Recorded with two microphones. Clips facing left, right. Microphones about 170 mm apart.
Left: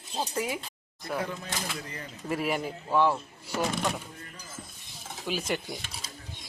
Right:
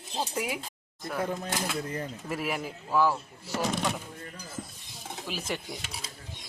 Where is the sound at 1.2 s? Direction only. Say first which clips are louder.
Right 4 dB; 50° right (ahead or behind).